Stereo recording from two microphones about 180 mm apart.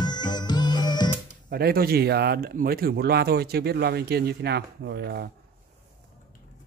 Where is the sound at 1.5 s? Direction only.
60° right (ahead or behind).